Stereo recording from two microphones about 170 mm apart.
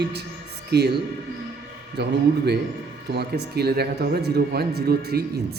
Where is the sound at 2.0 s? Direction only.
75° right (ahead or behind).